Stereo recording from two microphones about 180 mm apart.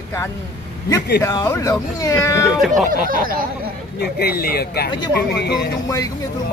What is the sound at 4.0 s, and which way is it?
Speech, 60° left (ahead or behind).